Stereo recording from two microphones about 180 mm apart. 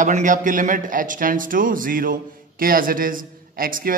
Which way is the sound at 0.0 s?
45° right (ahead or behind).